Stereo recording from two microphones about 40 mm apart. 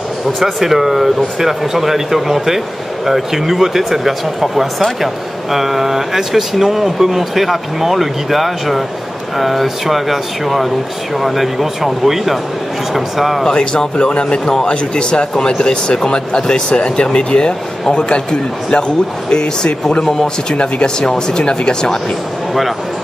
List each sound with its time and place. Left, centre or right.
0.4 s speech: centre
13.5 s speech: left
20.1 s a man's voice: centre